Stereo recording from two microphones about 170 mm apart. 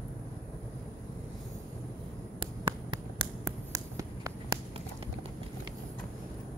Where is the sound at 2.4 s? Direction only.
30° right (ahead or behind).